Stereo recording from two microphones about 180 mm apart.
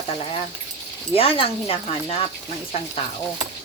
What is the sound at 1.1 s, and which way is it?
A woman's voice, 30° left (ahead or behind).